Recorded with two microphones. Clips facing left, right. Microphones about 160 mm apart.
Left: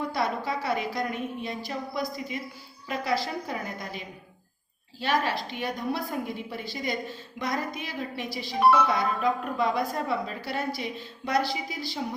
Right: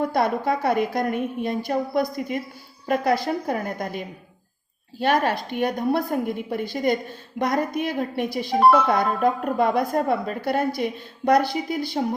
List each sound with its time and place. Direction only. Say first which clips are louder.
0.0 s speech: right 7 dB; 55° right (ahead or behind)